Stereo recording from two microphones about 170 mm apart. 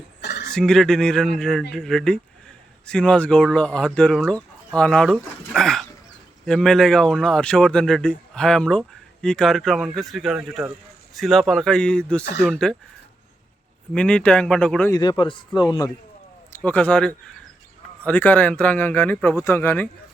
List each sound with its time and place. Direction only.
0.2 s a sound: 85° left
0.5 s speech: 5° left (ahead or behind)
13.9 s speech: 5° left (ahead or behind)
14.9 s speech: 25° left (ahead or behind)
16.5 s speech: 10° left (ahead or behind)